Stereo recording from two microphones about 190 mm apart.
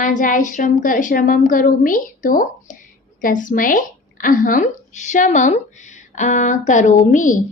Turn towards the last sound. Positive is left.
turn(degrees=45)  # may be behind; listen again after turning